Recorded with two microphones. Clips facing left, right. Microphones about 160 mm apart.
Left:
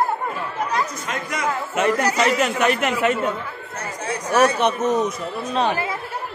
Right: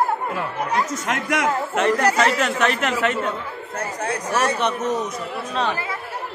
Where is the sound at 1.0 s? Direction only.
75° right (ahead or behind).